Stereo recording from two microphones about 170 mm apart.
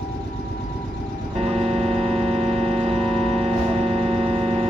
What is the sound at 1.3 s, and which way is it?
Music, 35° right (ahead or behind).